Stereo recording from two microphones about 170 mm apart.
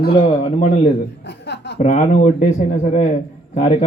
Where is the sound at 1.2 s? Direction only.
90° left.